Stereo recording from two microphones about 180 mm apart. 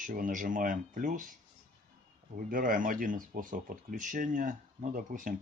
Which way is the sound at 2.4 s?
50° right (ahead or behind).